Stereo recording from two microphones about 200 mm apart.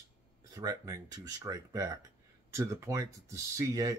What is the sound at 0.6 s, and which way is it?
Speech, 20° right (ahead or behind).